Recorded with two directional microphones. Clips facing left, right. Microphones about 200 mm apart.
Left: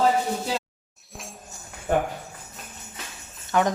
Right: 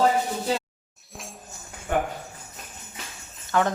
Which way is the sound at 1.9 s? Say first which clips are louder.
Left 2 dB; 40° left (ahead or behind).